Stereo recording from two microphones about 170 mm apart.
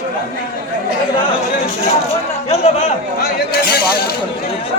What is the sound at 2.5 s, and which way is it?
Speech, 40° left (ahead or behind).